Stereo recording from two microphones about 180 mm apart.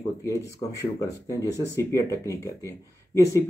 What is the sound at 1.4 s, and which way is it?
Speech, 15° left (ahead or behind).